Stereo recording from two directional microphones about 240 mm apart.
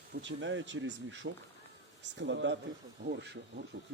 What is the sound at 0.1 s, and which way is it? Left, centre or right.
Speech, right.